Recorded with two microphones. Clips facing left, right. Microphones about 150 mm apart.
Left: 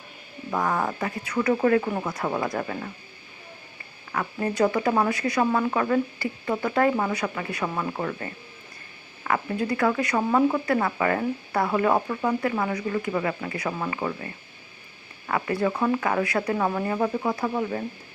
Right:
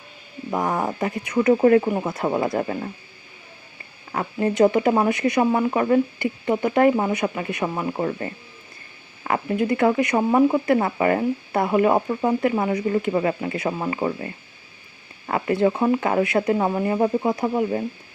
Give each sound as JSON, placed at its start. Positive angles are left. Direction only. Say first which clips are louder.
{"t": 0.5, "sound": "speech", "louder": "right 2 dB", "side_deg": -20}
{"t": 4.1, "sound": "speech", "louder": "right 4 dB", "side_deg": -25}
{"t": 15.3, "sound": "speech", "louder": "right 5 dB", "side_deg": -25}